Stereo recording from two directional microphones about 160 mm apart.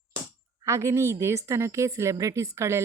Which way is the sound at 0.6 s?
15° right (ahead or behind).